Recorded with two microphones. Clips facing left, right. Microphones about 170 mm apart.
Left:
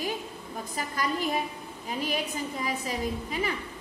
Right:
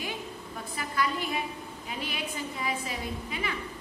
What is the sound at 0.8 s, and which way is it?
A woman's voice, 40° left (ahead or behind).